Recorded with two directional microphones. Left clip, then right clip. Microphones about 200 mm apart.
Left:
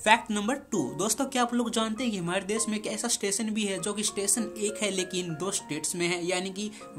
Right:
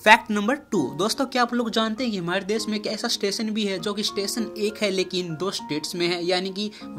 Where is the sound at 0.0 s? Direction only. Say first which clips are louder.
Right 7 dB; 20° right (ahead or behind).